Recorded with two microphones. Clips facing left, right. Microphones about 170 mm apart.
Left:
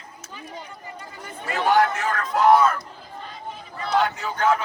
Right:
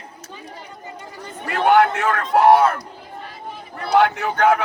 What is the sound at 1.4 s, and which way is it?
A man's voice, 60° right (ahead or behind).